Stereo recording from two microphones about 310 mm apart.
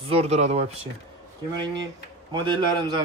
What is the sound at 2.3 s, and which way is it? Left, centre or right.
Speech, centre.